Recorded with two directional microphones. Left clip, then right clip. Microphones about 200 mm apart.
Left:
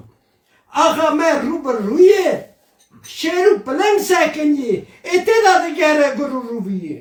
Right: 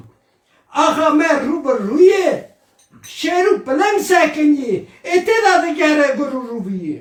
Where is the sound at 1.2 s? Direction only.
40° left (ahead or behind).